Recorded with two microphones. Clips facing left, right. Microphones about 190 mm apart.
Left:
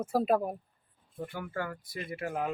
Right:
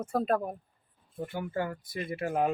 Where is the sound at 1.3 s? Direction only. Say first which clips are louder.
Right 4 dB; 25° right (ahead or behind).